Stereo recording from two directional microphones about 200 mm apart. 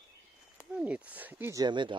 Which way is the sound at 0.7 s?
5° right (ahead or behind).